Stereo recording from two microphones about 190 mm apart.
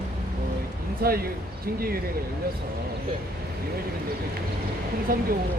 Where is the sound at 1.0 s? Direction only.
55° right (ahead or behind).